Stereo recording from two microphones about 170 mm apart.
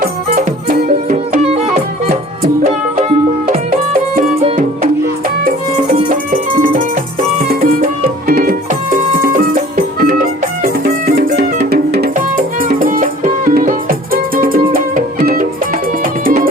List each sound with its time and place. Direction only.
0.0 s music: 55° right (ahead or behind)
4.4 s music: 35° right (ahead or behind)
5.5 s music: 50° right (ahead or behind); by 12.1 s 65° right (ahead or behind)
12.1 s music: 55° right (ahead or behind)